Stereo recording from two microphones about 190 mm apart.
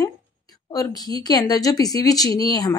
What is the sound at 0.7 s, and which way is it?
Speech, 20° left (ahead or behind).